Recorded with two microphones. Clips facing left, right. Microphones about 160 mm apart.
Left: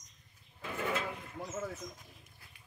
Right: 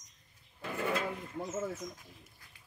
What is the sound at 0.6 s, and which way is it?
Bird, 5° right (ahead or behind).